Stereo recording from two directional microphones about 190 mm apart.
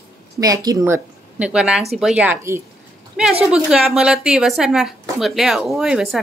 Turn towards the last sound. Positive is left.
turn(degrees=0)  # may be behind; listen again after turning